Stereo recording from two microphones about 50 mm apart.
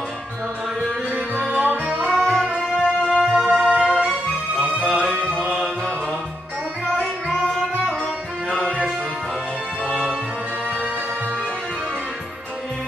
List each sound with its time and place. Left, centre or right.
1.5 s music: right
2.8 s music: centre
3.3 s music: centre
7.0 s music: centre